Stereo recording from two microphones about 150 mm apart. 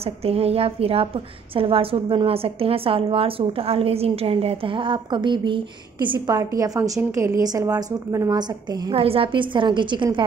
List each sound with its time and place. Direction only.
0.0 s a woman's voice: 40° right (ahead or behind); by 8.9 s 25° right (ahead or behind)
8.9 s a woman's voice: 40° right (ahead or behind)